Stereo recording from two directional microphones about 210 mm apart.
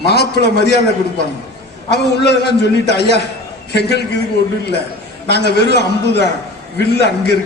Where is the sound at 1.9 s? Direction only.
50° left (ahead or behind).